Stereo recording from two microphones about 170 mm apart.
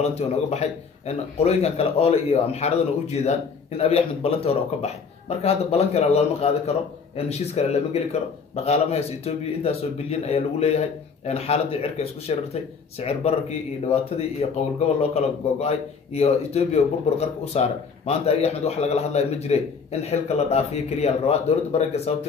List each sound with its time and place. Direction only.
0.0 s a man's voice: 40° left (ahead or behind)